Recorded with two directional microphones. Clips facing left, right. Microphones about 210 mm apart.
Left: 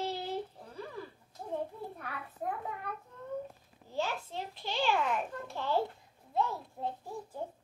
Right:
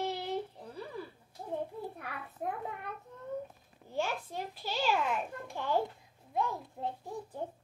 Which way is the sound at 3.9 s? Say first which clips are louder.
Right 1 dB; 15° right (ahead or behind).